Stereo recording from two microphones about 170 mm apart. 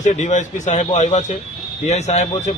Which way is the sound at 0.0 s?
45° left (ahead or behind).